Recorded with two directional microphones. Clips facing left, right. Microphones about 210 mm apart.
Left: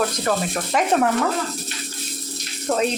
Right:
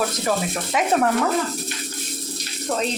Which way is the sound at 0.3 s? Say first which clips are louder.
Left 1 dB; 5° right (ahead or behind).